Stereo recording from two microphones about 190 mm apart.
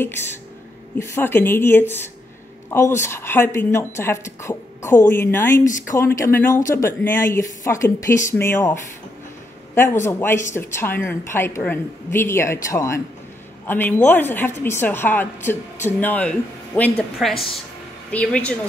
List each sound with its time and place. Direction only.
0.9 s a woman's voice: 15° left (ahead or behind)